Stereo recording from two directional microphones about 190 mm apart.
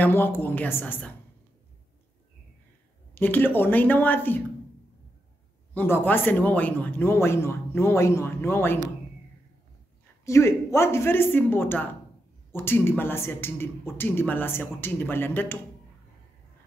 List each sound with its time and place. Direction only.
0.0 s a man's voice: 10° left (ahead or behind)
3.2 s a man's voice: 10° left (ahead or behind)
5.8 s a man's voice: 10° left (ahead or behind)
10.2 s a man's voice: 15° left (ahead or behind)